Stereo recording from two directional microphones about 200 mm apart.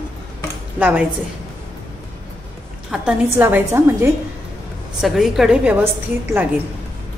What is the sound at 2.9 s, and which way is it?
Speech, 5° right (ahead or behind).